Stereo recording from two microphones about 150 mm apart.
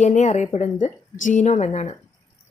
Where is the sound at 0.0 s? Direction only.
50° left (ahead or behind).